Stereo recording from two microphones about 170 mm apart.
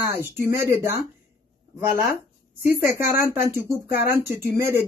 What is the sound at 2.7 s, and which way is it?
Speech, 15° right (ahead or behind).